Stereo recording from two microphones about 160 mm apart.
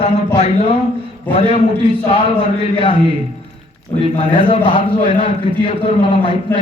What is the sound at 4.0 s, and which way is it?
A man's voice, 35° left (ahead or behind).